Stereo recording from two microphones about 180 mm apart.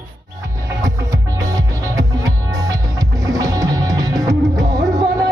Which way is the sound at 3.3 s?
20° right (ahead or behind).